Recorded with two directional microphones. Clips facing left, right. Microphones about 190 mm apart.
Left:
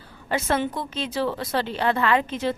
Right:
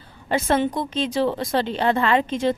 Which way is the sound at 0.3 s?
30° right (ahead or behind).